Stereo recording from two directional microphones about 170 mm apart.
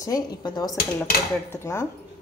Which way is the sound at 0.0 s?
25° left (ahead or behind).